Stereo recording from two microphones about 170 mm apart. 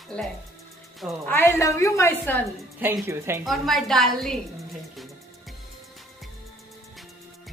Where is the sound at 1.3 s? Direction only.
15° left (ahead or behind).